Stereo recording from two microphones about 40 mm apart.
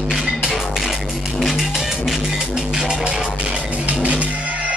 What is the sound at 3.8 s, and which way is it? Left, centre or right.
Music, right.